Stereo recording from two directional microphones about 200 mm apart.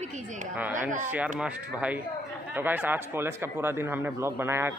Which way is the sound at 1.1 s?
5° right (ahead or behind).